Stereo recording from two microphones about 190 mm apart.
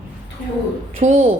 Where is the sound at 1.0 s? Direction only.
40° right (ahead or behind).